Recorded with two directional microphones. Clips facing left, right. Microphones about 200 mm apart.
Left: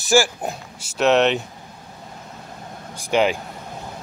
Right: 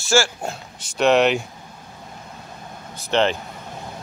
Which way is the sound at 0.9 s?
Centre (ahead or behind).